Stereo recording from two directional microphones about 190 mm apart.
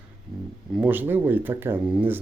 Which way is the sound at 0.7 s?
10° right (ahead or behind).